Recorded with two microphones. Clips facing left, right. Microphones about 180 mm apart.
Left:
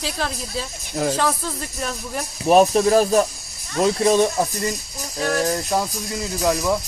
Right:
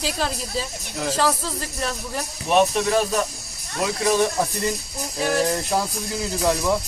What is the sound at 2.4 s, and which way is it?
Speech, 35° left (ahead or behind).